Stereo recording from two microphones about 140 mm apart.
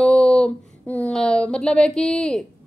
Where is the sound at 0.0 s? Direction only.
5° left (ahead or behind).